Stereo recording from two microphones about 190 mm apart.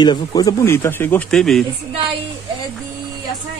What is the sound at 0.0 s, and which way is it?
Speech, 20° left (ahead or behind).